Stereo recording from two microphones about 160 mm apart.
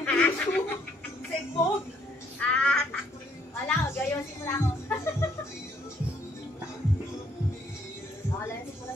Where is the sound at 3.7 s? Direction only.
15° left (ahead or behind).